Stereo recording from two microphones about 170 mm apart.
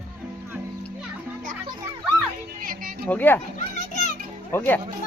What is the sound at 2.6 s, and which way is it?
Music, 55° right (ahead or behind).